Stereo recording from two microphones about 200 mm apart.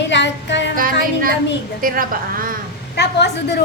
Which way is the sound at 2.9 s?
55° left (ahead or behind).